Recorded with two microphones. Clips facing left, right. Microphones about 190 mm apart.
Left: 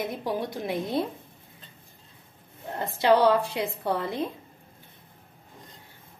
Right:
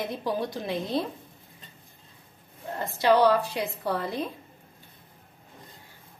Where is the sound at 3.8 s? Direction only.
25° left (ahead or behind).